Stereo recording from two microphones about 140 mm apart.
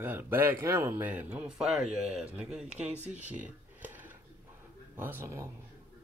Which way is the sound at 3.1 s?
10° right (ahead or behind).